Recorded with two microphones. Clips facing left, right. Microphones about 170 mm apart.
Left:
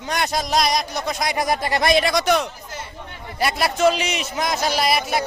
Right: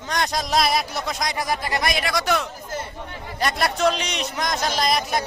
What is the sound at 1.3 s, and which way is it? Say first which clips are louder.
Speech: left 6 dB; 20° left (ahead or behind).